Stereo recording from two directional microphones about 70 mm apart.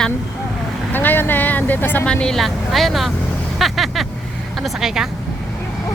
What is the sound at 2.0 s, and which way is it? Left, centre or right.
Speech, centre.